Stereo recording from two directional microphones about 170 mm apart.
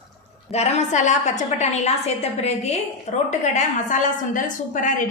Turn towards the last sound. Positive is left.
turn(degrees=50)  # may be behind; listen again after turning